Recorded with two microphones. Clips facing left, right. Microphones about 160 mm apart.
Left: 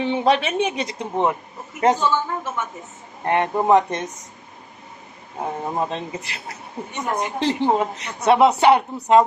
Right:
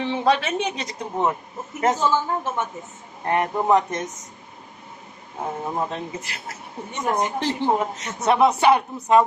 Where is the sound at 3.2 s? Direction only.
25° left (ahead or behind).